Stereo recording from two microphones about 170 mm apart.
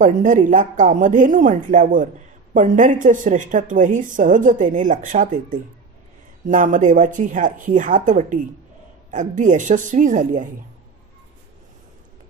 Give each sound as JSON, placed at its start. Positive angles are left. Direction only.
{"t": 0.0, "sound": "a woman's voice", "side_deg": -50}